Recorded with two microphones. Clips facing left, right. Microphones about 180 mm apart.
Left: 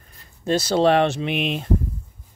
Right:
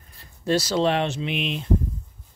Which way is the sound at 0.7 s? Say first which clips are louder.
Left 5 dB; 55° left (ahead or behind).